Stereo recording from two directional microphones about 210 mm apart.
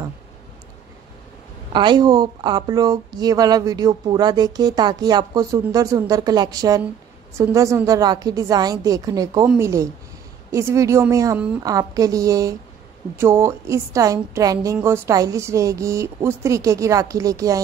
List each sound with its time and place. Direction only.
1.7 s a woman's voice: 20° right (ahead or behind)